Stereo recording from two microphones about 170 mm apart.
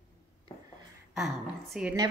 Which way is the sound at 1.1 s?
Centre (ahead or behind).